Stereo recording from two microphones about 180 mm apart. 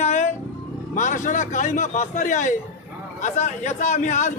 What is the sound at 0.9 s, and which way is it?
A man's voice, 45° left (ahead or behind).